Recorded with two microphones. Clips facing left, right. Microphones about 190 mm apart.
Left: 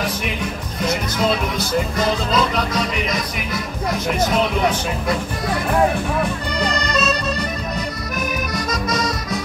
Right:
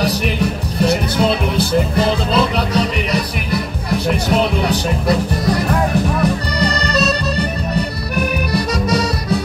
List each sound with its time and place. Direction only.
0.0 s music: 35° right (ahead or behind)
6.2 s accordion: 35° right (ahead or behind)
8.5 s music: 35° right (ahead or behind)